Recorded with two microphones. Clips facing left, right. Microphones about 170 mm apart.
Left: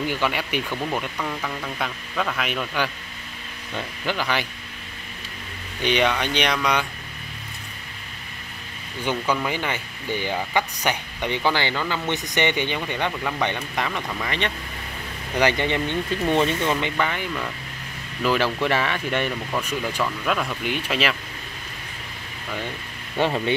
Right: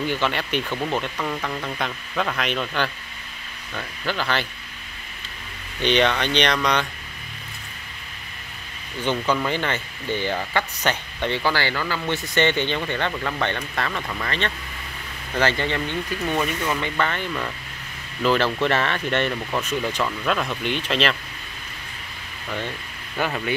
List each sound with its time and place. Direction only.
0.1 s speech: 10° left (ahead or behind)
0.8 s speech: centre (ahead or behind)
5.8 s speech: 10° left (ahead or behind)
9.0 s speech: 10° left (ahead or behind); by 16.7 s 25° left (ahead or behind)
16.9 s speech: 10° left (ahead or behind)
20.0 s speech: 5° right (ahead or behind)
23.2 s speech: 25° left (ahead or behind)